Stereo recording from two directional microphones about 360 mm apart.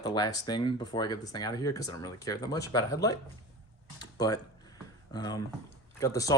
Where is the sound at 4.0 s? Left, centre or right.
Centre.